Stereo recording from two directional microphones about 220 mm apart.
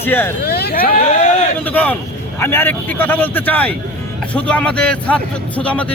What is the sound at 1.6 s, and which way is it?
A man's voice, 5° left (ahead or behind).